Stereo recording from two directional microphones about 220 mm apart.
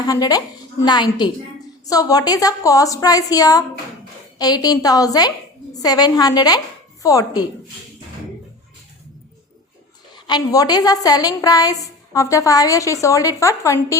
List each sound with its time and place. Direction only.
0.0 s a woman's voice: 15° left (ahead or behind)
10.2 s a woman's voice: 20° left (ahead or behind)